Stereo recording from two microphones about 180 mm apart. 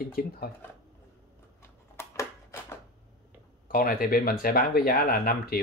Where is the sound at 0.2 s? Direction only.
55° left (ahead or behind).